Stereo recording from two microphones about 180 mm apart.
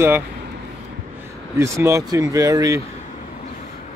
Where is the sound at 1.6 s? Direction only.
15° right (ahead or behind).